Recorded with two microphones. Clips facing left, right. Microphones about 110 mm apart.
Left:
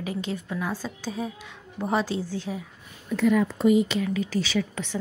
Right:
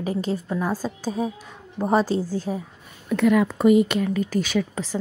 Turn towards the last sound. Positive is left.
turn(degrees=-50)  # may be behind; listen again after turning